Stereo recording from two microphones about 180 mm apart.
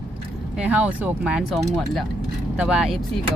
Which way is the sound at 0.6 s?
5° right (ahead or behind).